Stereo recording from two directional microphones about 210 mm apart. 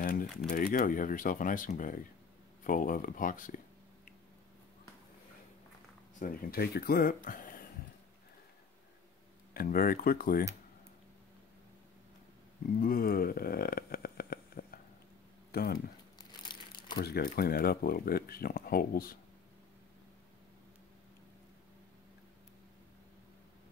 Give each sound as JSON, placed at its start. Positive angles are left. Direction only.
{"t": 0.0, "sound": "a sound", "side_deg": 40}
{"t": 0.5, "sound": "speech", "side_deg": 45}
{"t": 6.1, "sound": "speech", "side_deg": 40}
{"t": 9.5, "sound": "speech", "side_deg": 45}
{"t": 12.8, "sound": "a sound", "side_deg": 45}
{"t": 15.5, "sound": "speech", "side_deg": 50}
{"t": 16.2, "sound": "crumpling", "side_deg": 20}
{"t": 17.0, "sound": "speech", "side_deg": 50}